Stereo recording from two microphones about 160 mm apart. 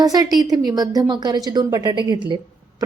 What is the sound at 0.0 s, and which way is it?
A woman's voice, 25° right (ahead or behind).